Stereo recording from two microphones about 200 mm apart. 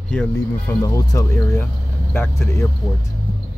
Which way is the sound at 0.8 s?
15° left (ahead or behind).